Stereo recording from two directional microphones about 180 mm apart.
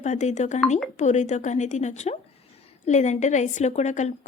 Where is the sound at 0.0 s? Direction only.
40° left (ahead or behind).